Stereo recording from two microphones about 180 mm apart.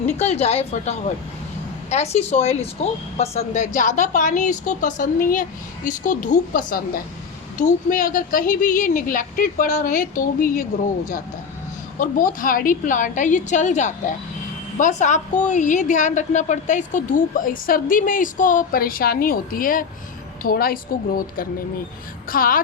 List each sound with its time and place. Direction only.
0.2 s a woman's voice: 35° left (ahead or behind)
11.9 s a woman's voice: 50° left (ahead or behind)